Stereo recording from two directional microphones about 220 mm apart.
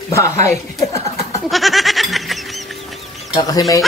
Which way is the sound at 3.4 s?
15° left (ahead or behind).